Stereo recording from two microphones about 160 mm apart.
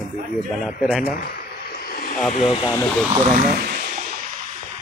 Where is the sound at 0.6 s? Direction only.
Centre (ahead or behind).